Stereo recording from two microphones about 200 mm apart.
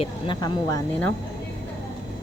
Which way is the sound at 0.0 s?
20° left (ahead or behind).